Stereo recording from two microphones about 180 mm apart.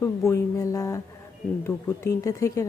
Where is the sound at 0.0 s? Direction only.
15° left (ahead or behind).